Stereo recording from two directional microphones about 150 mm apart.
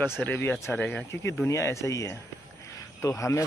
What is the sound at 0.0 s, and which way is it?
Speech, 15° left (ahead or behind).